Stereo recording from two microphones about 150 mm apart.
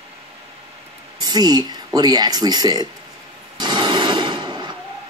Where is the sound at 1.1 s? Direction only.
25° right (ahead or behind).